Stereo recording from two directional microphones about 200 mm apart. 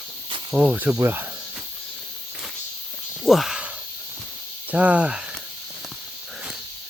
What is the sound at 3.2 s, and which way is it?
Speech, centre (ahead or behind).